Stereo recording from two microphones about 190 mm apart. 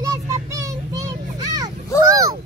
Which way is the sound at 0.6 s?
15° right (ahead or behind).